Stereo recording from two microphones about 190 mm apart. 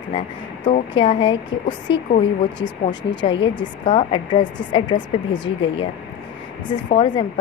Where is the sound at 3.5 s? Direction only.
30° left (ahead or behind).